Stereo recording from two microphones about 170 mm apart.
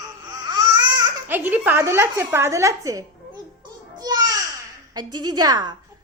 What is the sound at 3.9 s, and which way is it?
Babbling, 25° right (ahead or behind).